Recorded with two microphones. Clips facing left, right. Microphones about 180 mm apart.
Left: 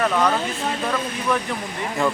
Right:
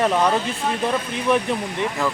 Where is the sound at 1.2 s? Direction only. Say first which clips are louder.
Right 6 dB; 20° right (ahead or behind).